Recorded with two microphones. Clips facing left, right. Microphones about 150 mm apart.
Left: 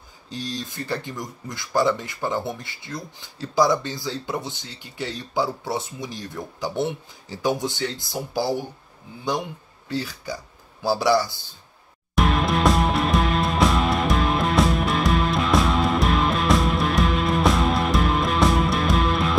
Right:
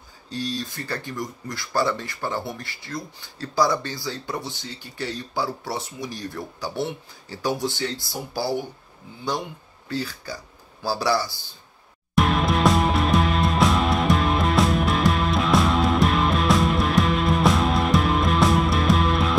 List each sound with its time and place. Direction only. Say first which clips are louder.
0.3 s speech: right 2 dB; 20° left (ahead or behind)
9.8 s speech: left 1 dB; 20° left (ahead or behind)
12.2 s music: right 1 dB; centre (ahead or behind)